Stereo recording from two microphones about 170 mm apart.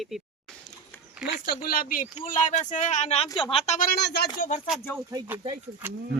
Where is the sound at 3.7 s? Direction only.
65° left (ahead or behind).